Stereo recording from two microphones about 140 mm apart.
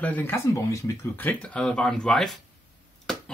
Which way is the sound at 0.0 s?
15° left (ahead or behind).